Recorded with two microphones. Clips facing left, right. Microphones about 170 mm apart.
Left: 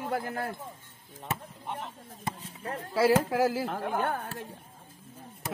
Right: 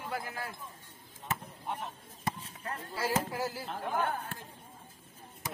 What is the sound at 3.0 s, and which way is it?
Speech, 90° left.